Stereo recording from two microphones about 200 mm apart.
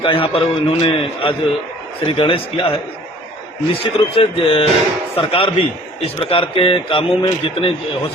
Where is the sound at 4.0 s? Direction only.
25° left (ahead or behind).